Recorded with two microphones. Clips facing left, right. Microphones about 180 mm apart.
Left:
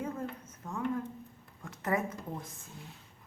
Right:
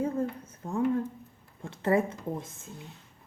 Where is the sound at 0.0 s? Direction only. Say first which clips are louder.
Right 8 dB; 30° right (ahead or behind).